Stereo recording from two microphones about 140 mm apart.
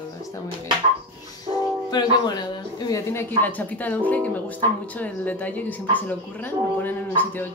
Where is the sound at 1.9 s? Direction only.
30° left (ahead or behind); by 7.4 s 15° left (ahead or behind).